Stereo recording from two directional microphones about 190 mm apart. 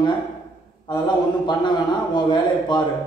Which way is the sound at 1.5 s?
25° left (ahead or behind).